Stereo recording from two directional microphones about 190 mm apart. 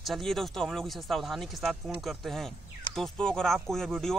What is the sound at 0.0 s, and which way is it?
Speech, centre (ahead or behind).